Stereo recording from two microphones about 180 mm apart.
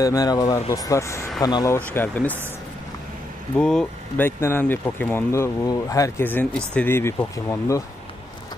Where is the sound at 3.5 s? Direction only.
5° left (ahead or behind).